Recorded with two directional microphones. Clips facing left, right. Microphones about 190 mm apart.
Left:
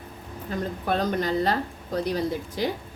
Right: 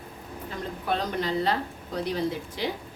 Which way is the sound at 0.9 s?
45° left (ahead or behind).